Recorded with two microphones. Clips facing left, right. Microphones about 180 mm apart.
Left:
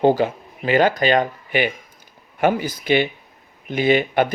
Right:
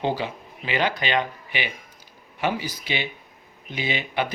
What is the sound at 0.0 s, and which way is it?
Speech, 45° left (ahead or behind).